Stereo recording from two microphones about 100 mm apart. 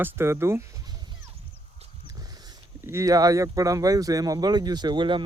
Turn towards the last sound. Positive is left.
turn(degrees=-50)  # may be behind; listen again after turning